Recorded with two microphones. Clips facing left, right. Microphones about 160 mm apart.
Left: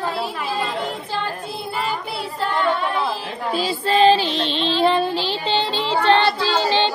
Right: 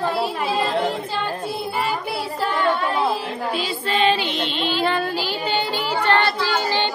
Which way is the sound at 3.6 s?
30° left (ahead or behind).